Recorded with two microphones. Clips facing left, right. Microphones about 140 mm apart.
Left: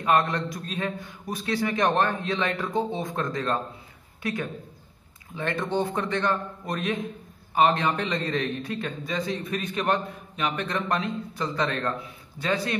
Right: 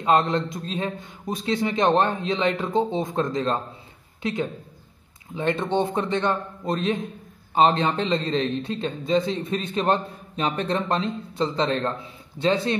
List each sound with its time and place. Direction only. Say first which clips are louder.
0.0 s a man's voice: right 3 dB; 25° right (ahead or behind)